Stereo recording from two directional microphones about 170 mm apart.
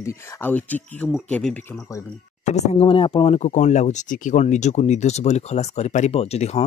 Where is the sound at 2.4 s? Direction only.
40° left (ahead or behind).